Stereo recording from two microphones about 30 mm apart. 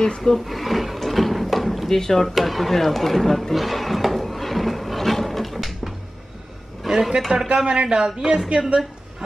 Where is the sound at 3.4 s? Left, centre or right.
Centre.